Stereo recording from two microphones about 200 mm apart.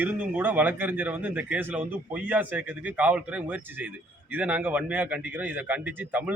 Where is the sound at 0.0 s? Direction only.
10° right (ahead or behind).